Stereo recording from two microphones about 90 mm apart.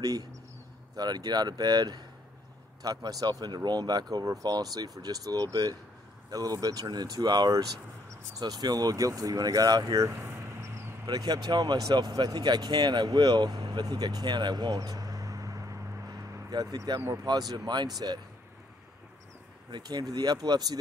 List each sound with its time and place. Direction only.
0.0 s speech: 45° right (ahead or behind)
11.1 s speech: 45° right (ahead or behind)
17.0 s speech: 35° right (ahead or behind)
19.7 s speech: 50° right (ahead or behind)